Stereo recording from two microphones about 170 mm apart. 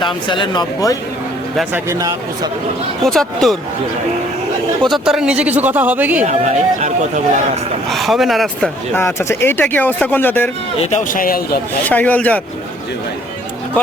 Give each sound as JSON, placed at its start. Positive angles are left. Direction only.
{"t": 0.0, "sound": "speech", "side_deg": 30}
{"t": 1.7, "sound": "speech", "side_deg": -20}
{"t": 3.0, "sound": "speech", "side_deg": 0}
{"t": 4.8, "sound": "speech", "side_deg": 0}
{"t": 6.2, "sound": "speech", "side_deg": -45}
{"t": 7.9, "sound": "speech", "side_deg": 0}
{"t": 8.9, "sound": "speech", "side_deg": 15}
{"t": 10.8, "sound": "speech", "side_deg": 45}
{"t": 11.9, "sound": "speech", "side_deg": 10}